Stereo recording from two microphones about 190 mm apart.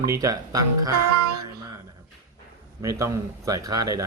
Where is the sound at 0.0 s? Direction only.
15° right (ahead or behind).